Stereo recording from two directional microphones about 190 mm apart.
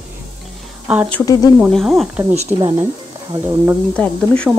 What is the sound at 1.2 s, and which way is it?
Speech, 20° left (ahead or behind).